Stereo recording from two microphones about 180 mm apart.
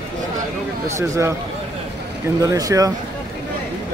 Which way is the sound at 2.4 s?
20° right (ahead or behind).